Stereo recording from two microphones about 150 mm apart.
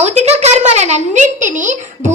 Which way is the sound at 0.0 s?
45° right (ahead or behind).